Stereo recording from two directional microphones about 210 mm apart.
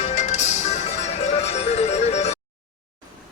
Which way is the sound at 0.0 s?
35° left (ahead or behind).